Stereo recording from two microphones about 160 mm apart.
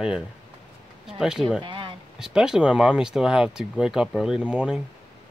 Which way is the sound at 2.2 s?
5° right (ahead or behind).